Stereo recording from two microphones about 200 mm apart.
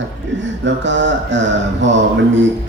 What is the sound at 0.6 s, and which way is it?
Speech, 65° right (ahead or behind).